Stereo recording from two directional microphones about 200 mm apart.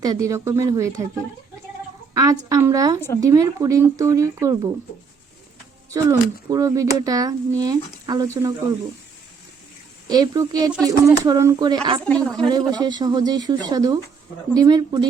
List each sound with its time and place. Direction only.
0.0 s speech: 15° right (ahead or behind)
2.5 s speech: 15° right (ahead or behind)
5.9 s speech: 15° right (ahead or behind)
10.1 s speech: 20° right (ahead or behind)
12.0 s a woman's voice: 5° left (ahead or behind)
12.5 s speech: 20° right (ahead or behind)